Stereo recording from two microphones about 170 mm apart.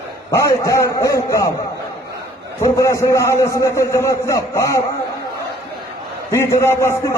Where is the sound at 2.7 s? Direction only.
20° left (ahead or behind).